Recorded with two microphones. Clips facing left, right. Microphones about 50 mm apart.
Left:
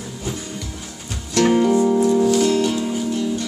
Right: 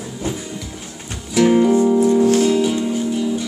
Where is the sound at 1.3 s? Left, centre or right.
Centre.